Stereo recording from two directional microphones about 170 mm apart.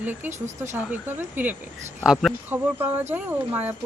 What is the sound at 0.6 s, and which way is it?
Speech, 10° right (ahead or behind).